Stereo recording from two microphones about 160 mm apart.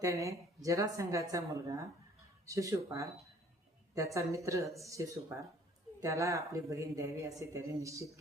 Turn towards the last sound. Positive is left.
turn(degrees=-20)  # may be behind; listen again after turning